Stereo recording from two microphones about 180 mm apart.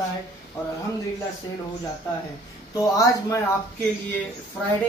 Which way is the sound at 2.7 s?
15° left (ahead or behind).